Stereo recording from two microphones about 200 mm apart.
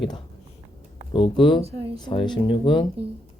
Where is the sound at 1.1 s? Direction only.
25° left (ahead or behind).